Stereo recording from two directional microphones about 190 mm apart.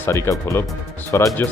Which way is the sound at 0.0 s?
15° left (ahead or behind).